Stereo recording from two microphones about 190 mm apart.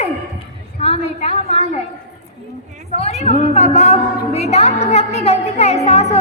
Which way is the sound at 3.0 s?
35° left (ahead or behind).